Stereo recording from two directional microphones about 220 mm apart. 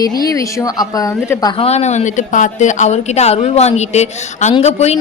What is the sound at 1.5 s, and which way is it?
A woman's voice, 25° left (ahead or behind).